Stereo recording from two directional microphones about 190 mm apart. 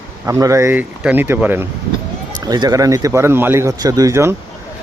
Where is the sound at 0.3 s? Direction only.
15° right (ahead or behind).